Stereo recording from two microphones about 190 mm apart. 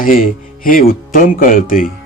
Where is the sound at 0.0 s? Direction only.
45° left (ahead or behind).